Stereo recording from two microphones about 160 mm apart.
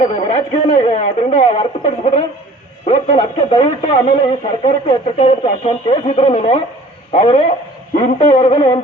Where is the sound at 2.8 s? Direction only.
45° left (ahead or behind).